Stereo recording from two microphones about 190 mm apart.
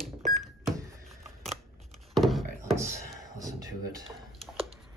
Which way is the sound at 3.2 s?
20° right (ahead or behind).